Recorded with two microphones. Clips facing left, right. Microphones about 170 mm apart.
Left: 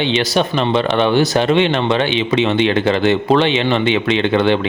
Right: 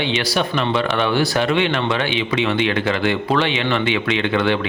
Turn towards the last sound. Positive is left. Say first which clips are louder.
# left 4 dB
turn(degrees=25)  # may be behind; listen again after turning